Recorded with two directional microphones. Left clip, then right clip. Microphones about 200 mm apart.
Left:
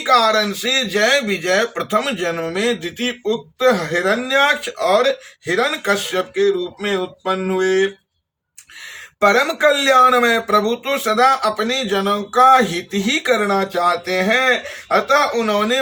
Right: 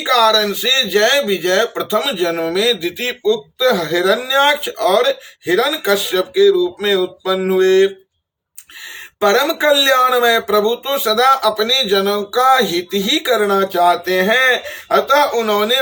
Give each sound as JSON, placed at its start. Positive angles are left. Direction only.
{"t": 0.0, "sound": "speech", "side_deg": -20}
{"t": 9.3, "sound": "speech", "side_deg": -20}